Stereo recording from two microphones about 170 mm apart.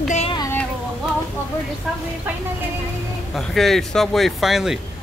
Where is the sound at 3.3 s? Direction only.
Centre (ahead or behind).